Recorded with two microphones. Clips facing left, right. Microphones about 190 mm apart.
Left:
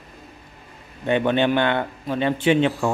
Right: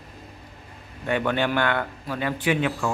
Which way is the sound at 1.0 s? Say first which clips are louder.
Left 5 dB; 20° left (ahead or behind).